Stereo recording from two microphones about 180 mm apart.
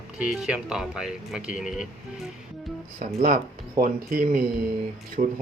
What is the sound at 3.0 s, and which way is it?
Speech, 50° right (ahead or behind).